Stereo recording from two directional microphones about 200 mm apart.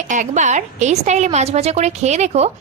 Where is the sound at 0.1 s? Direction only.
35° right (ahead or behind).